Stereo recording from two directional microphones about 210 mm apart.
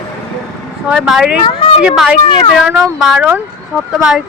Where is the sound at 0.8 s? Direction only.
5° right (ahead or behind).